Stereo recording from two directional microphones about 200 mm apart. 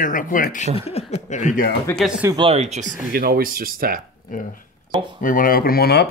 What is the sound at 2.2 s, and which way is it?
Speech, 25° right (ahead or behind).